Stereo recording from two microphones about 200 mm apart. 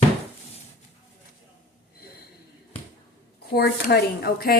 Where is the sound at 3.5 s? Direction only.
50° left (ahead or behind).